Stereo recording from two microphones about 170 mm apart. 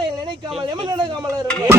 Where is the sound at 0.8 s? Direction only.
25° right (ahead or behind).